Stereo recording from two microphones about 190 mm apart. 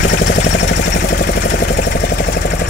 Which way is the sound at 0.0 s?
75° left (ahead or behind).